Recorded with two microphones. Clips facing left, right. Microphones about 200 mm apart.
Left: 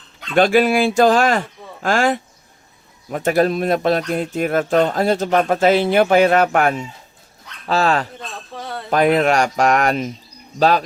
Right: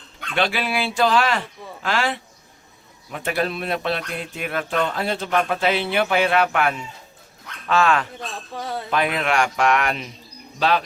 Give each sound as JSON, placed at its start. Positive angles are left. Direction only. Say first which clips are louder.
{"t": 0.3, "sound": "speech", "louder": "left 9 dB", "side_deg": 45}
{"t": 8.5, "sound": "speech", "louder": "right 1 dB", "side_deg": 0}
{"t": 8.9, "sound": "speech", "louder": "left 8 dB", "side_deg": 45}